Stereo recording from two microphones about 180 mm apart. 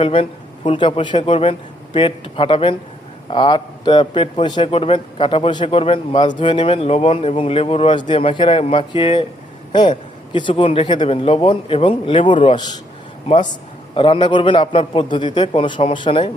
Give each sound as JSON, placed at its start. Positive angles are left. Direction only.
{"t": 0.0, "sound": "a man's voice", "side_deg": 30}